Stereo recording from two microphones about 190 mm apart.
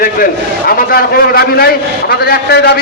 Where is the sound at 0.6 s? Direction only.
55° left (ahead or behind).